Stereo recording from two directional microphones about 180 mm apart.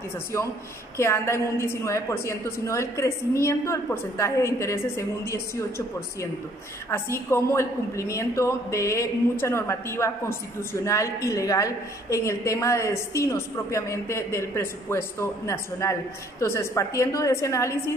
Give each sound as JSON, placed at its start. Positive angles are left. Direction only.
{"t": 0.9, "sound": "a woman's voice", "side_deg": 15}
{"t": 6.9, "sound": "a woman's voice", "side_deg": 15}